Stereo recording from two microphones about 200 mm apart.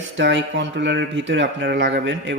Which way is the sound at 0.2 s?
65° right (ahead or behind).